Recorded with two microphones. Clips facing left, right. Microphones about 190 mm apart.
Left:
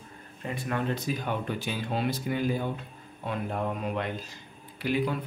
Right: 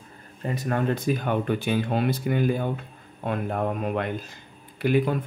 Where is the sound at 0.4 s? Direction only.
40° right (ahead or behind).